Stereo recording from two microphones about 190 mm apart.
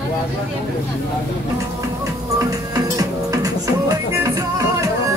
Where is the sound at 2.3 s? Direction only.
20° right (ahead or behind).